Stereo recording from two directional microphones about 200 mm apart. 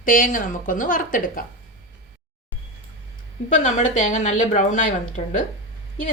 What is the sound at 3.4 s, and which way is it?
Speech, 40° left (ahead or behind).